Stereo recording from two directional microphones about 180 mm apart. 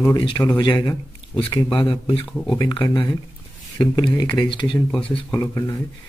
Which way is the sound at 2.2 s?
5° left (ahead or behind).